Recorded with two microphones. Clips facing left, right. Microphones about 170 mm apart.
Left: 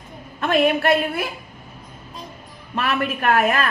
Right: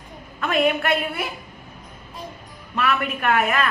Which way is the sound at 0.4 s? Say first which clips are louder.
Left 3 dB; 35° left (ahead or behind).